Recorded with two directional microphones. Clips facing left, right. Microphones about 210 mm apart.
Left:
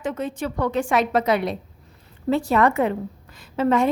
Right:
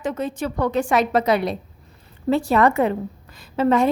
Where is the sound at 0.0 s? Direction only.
35° right (ahead or behind).